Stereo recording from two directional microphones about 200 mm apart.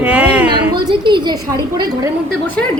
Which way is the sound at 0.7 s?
25° right (ahead or behind).